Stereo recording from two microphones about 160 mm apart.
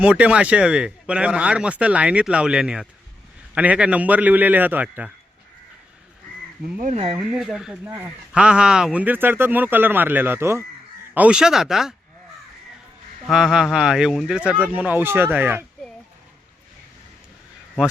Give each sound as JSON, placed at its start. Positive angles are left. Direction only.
{"t": 0.0, "sound": "speech", "side_deg": -5}
{"t": 6.7, "sound": "speech", "side_deg": -45}
{"t": 7.2, "sound": "speech", "side_deg": -5}
{"t": 13.2, "sound": "speech", "side_deg": -5}